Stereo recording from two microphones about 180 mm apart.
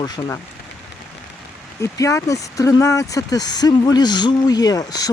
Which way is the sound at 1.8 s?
15° left (ahead or behind).